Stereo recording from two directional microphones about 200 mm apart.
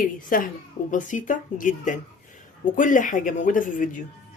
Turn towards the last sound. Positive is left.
turn(degrees=40)  # may be behind; listen again after turning